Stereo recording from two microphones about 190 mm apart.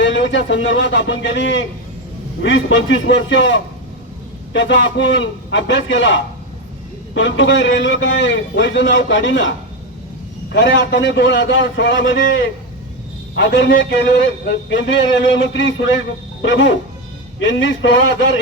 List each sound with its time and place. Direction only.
0.0 s a man's voice: 75° left (ahead or behind)